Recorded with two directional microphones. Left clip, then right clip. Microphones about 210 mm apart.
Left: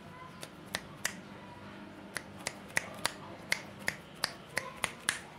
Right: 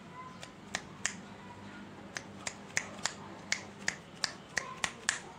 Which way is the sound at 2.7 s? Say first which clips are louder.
Left 2 dB; 30° left (ahead or behind).